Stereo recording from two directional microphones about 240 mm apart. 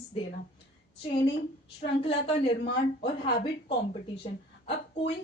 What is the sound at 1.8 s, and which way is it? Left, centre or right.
Speech, left.